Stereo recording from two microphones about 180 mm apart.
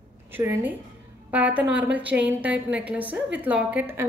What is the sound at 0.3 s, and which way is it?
A woman's voice, 10° right (ahead or behind).